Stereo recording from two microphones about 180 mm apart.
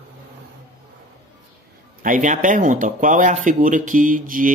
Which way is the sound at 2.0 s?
50° right (ahead or behind).